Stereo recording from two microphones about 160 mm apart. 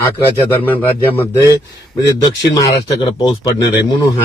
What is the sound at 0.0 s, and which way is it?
Speech, 15° left (ahead or behind).